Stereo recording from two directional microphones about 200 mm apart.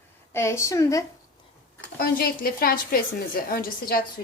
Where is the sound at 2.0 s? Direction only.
50° left (ahead or behind).